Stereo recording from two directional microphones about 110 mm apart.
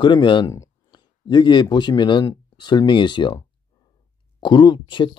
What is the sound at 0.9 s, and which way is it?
Speech, 40° left (ahead or behind).